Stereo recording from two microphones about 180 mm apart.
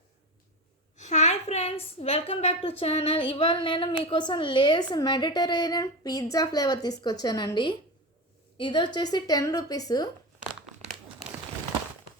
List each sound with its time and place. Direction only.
0.9 s a woman's voice: 40° left (ahead or behind); by 10.1 s 20° left (ahead or behind)